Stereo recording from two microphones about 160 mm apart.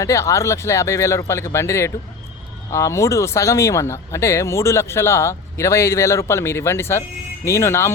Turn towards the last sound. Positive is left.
turn(degrees=15)  # may be behind; listen again after turning